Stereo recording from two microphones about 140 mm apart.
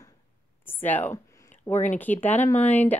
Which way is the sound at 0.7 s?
15° left (ahead or behind).